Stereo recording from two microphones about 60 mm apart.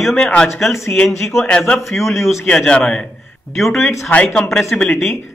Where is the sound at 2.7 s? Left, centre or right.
Centre.